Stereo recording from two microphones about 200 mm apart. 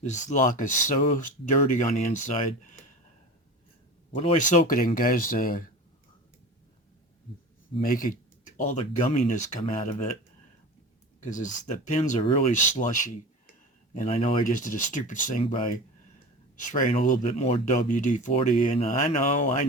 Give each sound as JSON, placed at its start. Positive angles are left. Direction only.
{"t": 0.0, "sound": "speech", "side_deg": 35}
{"t": 4.1, "sound": "speech", "side_deg": 30}
{"t": 7.8, "sound": "speech", "side_deg": 45}
{"t": 11.2, "sound": "speech", "side_deg": 40}
{"t": 13.9, "sound": "speech", "side_deg": 35}
{"t": 16.7, "sound": "speech", "side_deg": 40}